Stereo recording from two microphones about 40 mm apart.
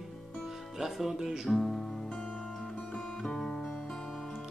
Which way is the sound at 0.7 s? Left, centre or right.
Centre.